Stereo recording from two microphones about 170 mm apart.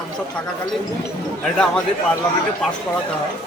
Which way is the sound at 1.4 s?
5° left (ahead or behind).